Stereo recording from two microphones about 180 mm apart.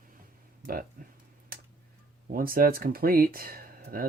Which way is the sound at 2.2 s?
55° right (ahead or behind).